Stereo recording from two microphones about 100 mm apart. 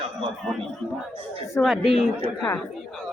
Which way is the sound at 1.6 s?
Centre (ahead or behind).